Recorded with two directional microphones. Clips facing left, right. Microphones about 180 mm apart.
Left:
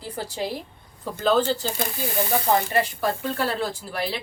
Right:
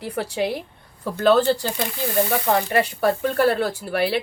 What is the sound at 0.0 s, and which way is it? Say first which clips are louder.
Speech: right 5 dB; 70° right (ahead or behind).